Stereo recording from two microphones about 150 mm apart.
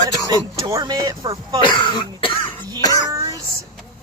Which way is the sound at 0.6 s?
25° right (ahead or behind).